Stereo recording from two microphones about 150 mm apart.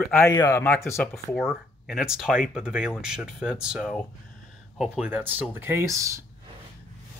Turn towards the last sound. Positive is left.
turn(degrees=-20)  # may be behind; listen again after turning